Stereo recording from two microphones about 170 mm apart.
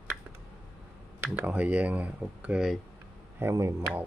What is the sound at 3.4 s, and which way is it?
Speech, 15° right (ahead or behind).